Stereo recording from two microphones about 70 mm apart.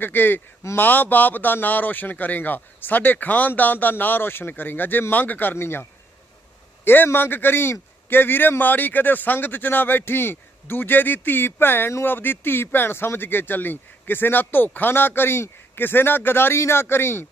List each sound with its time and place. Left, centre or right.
0.0 s a man's voice: left